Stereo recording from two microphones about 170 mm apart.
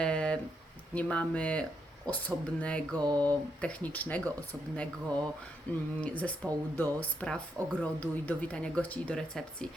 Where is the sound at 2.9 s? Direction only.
25° right (ahead or behind).